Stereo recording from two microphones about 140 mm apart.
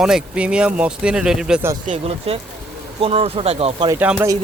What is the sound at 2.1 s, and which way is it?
Speech, 45° right (ahead or behind).